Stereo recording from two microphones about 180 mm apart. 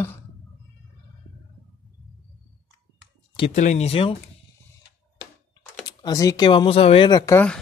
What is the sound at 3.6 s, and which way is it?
Speech, 40° left (ahead or behind).